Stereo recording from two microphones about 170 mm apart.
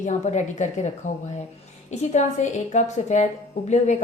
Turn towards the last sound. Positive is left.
turn(degrees=45)  # may be behind; listen again after turning